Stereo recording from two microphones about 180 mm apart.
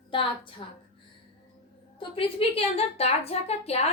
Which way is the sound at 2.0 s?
30° left (ahead or behind).